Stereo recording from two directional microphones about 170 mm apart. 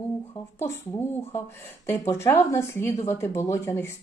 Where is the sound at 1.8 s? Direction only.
15° left (ahead or behind).